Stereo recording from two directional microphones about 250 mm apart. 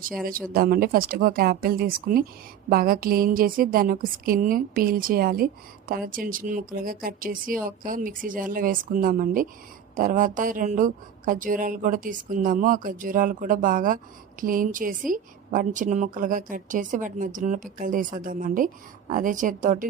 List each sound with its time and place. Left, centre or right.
0.2 s a woman's voice: right